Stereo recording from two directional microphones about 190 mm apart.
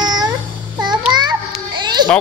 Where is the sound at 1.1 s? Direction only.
25° right (ahead or behind).